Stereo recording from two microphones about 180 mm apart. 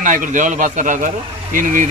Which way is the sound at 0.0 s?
45° right (ahead or behind).